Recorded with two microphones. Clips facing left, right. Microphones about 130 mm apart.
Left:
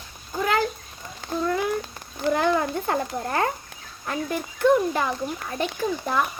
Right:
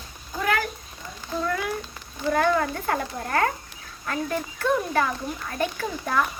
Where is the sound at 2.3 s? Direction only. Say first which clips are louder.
Even; 20° left (ahead or behind).